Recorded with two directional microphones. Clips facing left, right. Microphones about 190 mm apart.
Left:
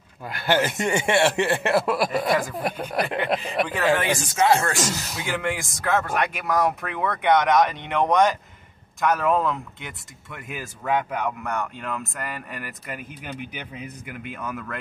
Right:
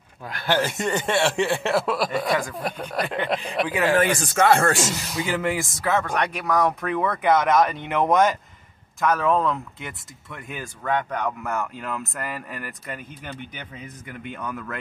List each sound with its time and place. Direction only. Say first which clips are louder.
0.3 s speech: left 1 dB; 5° left (ahead or behind)
4.1 s speech: right 1 dB; 55° right (ahead or behind)
4.8 s speech: right 2 dB; centre (ahead or behind)